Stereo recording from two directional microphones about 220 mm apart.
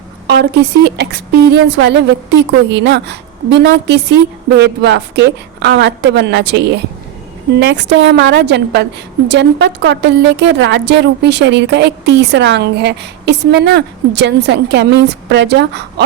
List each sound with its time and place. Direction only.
0.3 s a woman's voice: 50° right (ahead or behind)